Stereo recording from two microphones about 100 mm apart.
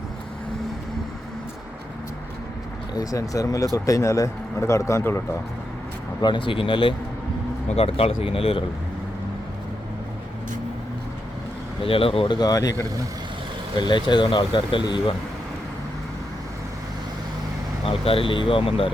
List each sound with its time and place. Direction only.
3.0 s a man's voice: 35° left (ahead or behind)
6.2 s speech: 55° left (ahead or behind)
7.7 s speech: 85° left
11.8 s speech: 65° left (ahead or behind)
12.4 s speech: 40° left (ahead or behind)
13.7 s speech: 50° left (ahead or behind)
17.8 s speech: 65° left (ahead or behind)